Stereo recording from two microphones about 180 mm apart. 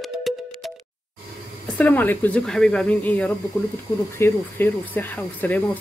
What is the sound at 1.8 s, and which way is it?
Speech, 10° left (ahead or behind).